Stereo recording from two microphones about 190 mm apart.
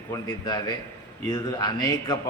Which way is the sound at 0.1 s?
20° left (ahead or behind).